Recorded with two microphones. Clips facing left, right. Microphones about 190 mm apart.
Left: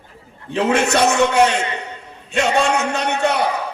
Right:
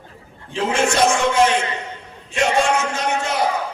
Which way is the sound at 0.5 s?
65° left (ahead or behind).